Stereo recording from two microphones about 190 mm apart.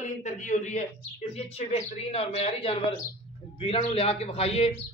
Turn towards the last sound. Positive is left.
turn(degrees=30)  # may be behind; listen again after turning